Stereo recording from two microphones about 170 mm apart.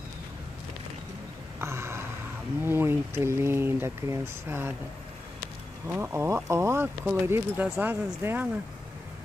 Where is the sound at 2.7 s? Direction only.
15° right (ahead or behind).